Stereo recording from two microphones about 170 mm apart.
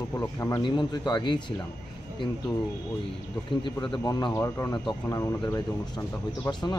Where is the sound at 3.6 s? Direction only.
25° left (ahead or behind).